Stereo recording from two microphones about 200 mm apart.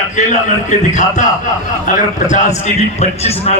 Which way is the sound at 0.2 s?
35° left (ahead or behind).